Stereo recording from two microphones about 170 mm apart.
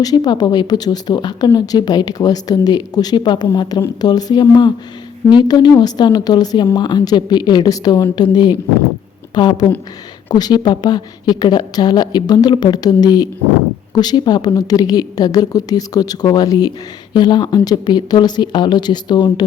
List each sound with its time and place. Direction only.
0.0 s a woman's voice: 20° left (ahead or behind)